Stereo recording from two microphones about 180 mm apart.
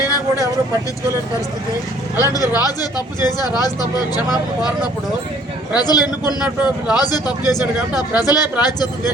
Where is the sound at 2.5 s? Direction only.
20° left (ahead or behind).